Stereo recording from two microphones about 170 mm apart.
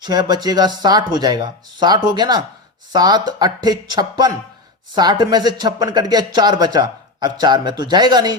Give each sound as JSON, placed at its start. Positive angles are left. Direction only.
{"t": 0.0, "sound": "speech", "side_deg": -25}